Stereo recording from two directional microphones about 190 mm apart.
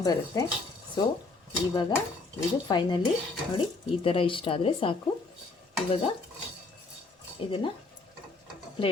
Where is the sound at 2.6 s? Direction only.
25° left (ahead or behind).